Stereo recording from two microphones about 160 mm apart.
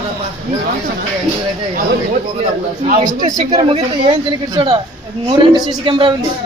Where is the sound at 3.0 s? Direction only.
25° right (ahead or behind).